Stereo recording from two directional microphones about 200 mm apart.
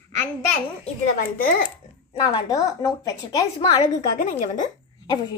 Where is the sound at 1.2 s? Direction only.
45° left (ahead or behind).